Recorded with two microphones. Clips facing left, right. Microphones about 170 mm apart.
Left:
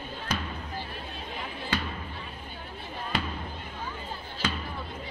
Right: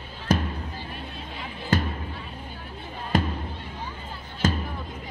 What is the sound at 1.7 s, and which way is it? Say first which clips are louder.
Music: right 7 dB; 45° right (ahead or behind).